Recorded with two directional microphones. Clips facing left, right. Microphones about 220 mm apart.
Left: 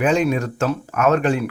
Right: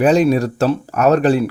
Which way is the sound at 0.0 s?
35° right (ahead or behind).